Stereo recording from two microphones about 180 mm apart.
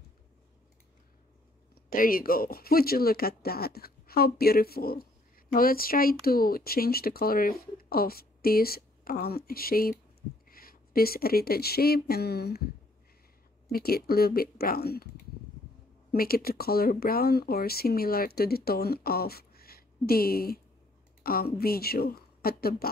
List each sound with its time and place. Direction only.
1.9 s speech: 50° left (ahead or behind)
13.7 s speech: 55° left (ahead or behind)
16.1 s speech: 55° left (ahead or behind)